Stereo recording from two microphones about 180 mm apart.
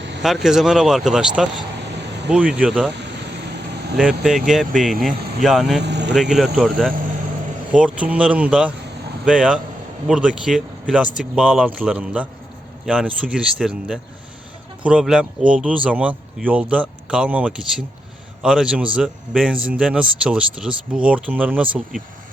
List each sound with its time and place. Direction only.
0.2 s speech: centre (ahead or behind)
1.9 s a sound: 75° right (ahead or behind)
2.3 s speech: 5° right (ahead or behind)
2.9 s vehicle: 70° right (ahead or behind)
3.9 s speech: centre (ahead or behind)
5.8 s speech: 75° right (ahead or behind)
6.1 s speech: centre (ahead or behind)